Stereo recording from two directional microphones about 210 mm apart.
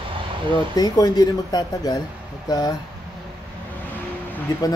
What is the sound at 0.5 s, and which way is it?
Speech, 20° left (ahead or behind).